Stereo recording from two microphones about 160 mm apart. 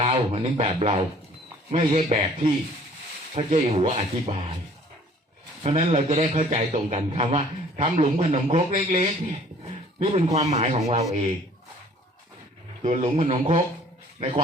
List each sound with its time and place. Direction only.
0.1 s speech: 40° right (ahead or behind)
5.6 s a man's voice: 40° right (ahead or behind)
12.8 s a man's voice: 45° right (ahead or behind)